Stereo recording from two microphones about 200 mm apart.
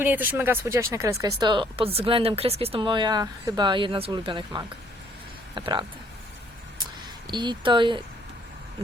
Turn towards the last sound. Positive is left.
turn(degrees=-25)  # may be behind; listen again after turning